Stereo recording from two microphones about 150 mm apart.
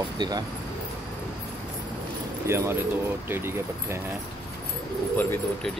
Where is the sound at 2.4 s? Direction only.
15° right (ahead or behind).